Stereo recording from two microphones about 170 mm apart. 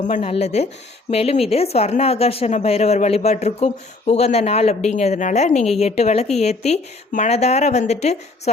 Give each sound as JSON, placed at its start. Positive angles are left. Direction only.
{"t": 0.0, "sound": "speech", "side_deg": 40}